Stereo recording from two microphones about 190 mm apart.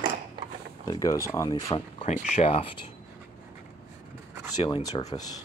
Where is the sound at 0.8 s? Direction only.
20° left (ahead or behind).